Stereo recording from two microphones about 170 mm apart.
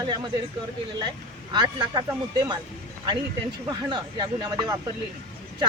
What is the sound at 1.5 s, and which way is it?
Speech, 25° right (ahead or behind).